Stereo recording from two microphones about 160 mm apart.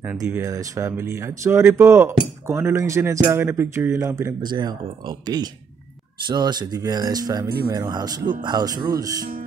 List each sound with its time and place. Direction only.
0.3 s speech: 20° right (ahead or behind)